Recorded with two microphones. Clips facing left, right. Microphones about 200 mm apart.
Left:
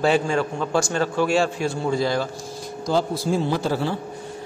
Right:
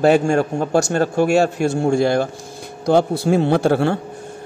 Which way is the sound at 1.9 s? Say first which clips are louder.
Right 6 dB; 60° right (ahead or behind).